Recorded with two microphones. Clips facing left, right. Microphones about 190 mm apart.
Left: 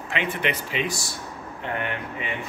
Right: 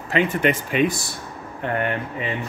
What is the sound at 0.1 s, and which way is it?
Speech, 45° right (ahead or behind).